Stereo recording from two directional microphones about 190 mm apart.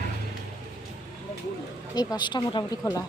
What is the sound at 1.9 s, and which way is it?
Speech, 20° left (ahead or behind).